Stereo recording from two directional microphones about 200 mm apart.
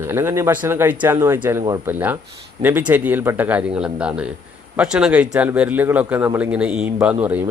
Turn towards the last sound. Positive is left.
turn(degrees=-5)  # may be behind; listen again after turning